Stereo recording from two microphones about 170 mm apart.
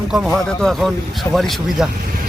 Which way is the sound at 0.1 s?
Centre (ahead or behind).